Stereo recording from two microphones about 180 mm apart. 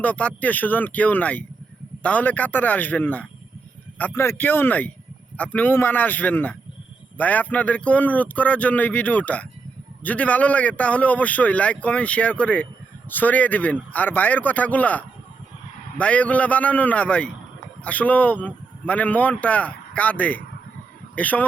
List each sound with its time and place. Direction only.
0.0 s a man's voice: 10° left (ahead or behind)